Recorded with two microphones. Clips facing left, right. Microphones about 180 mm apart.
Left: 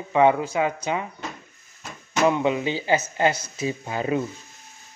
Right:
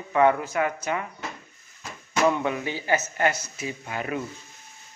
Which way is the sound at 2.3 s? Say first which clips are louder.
Left 4 dB; 20° left (ahead or behind).